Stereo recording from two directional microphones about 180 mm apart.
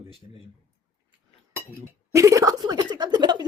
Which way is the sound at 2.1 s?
20° right (ahead or behind).